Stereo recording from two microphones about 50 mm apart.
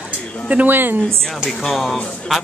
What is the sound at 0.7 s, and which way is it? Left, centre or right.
Speech, right.